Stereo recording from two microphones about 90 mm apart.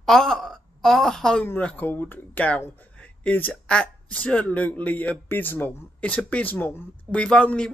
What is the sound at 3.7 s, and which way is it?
Speech, 10° left (ahead or behind).